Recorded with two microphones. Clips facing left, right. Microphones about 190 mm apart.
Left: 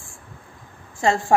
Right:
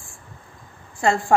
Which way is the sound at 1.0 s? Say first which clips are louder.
Even; 20° left (ahead or behind).